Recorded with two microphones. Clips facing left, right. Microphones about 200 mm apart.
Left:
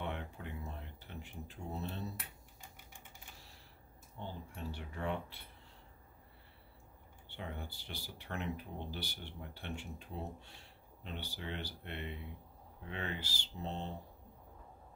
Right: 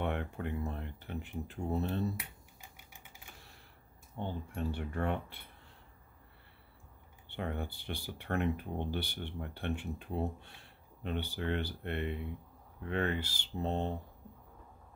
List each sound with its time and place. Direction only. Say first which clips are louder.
0.0 s speech: right 7 dB; 60° right (ahead or behind)
4.2 s speech: right 7 dB; 55° right (ahead or behind)
7.2 s speech: right 7 dB; 60° right (ahead or behind)